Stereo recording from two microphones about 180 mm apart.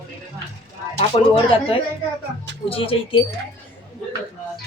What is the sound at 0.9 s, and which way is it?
Speech, 35° left (ahead or behind).